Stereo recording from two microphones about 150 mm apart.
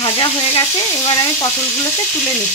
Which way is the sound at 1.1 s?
20° left (ahead or behind).